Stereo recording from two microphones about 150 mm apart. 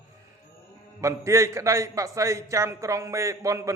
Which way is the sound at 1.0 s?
20° right (ahead or behind).